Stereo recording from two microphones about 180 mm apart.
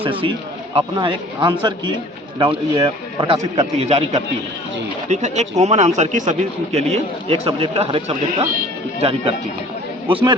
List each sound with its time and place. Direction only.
0.0 s a man's voice: 30° right (ahead or behind)